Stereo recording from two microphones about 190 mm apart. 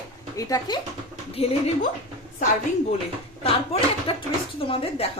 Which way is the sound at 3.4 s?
30° left (ahead or behind).